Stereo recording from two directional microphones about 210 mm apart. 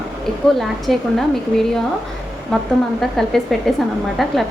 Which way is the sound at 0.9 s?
Centre (ahead or behind).